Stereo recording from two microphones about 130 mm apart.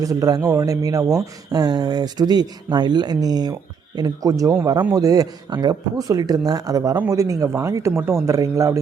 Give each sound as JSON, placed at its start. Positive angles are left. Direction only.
{"t": 0.0, "sound": "speech", "side_deg": -25}